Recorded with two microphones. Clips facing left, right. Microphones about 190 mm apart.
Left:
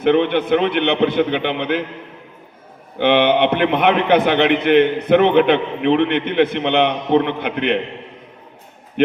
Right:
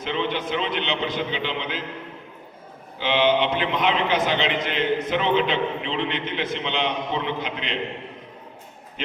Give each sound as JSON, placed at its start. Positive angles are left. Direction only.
{"t": 0.0, "sound": "a man's voice", "side_deg": 60}
{"t": 3.0, "sound": "a man's voice", "side_deg": 60}